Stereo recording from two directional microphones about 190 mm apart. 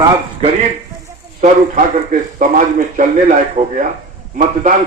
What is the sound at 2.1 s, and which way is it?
A man's voice, 45° right (ahead or behind).